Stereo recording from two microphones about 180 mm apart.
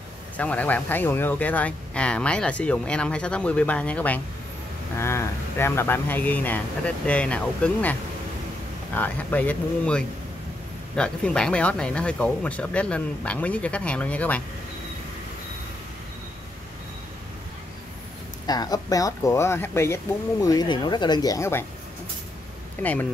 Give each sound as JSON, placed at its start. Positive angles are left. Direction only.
{"t": 0.4, "sound": "speech", "side_deg": 10}
{"t": 18.5, "sound": "speech", "side_deg": 20}
{"t": 22.8, "sound": "speech", "side_deg": 10}